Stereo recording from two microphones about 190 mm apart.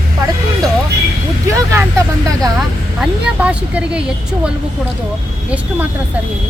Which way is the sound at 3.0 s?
5° right (ahead or behind).